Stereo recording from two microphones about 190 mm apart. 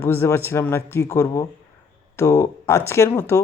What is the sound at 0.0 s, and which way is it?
Speech, 10° left (ahead or behind).